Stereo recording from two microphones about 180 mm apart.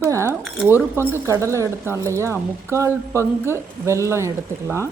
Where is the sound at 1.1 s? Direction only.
15° right (ahead or behind).